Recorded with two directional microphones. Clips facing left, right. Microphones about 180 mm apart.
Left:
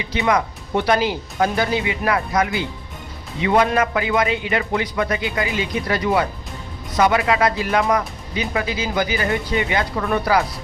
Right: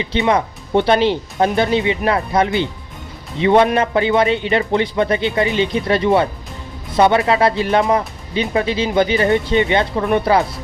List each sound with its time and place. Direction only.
0.0 s speech: 25° right (ahead or behind)